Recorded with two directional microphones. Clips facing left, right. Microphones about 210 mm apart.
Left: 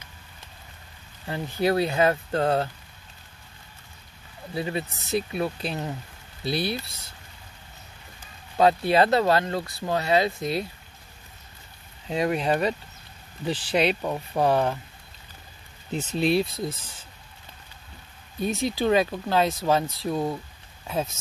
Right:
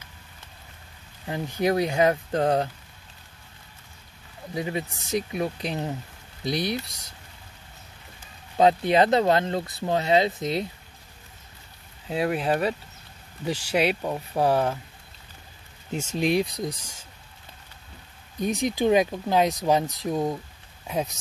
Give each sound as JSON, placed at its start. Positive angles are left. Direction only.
{"t": 1.2, "sound": "speech", "side_deg": -15}
{"t": 4.6, "sound": "speech", "side_deg": -15}
{"t": 8.5, "sound": "speech", "side_deg": -20}
{"t": 12.1, "sound": "speech", "side_deg": -5}
{"t": 15.9, "sound": "speech", "side_deg": -10}
{"t": 18.4, "sound": "speech", "side_deg": -15}